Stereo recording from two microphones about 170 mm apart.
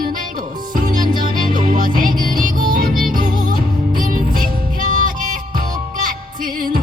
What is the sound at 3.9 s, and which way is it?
Music, 55° right (ahead or behind).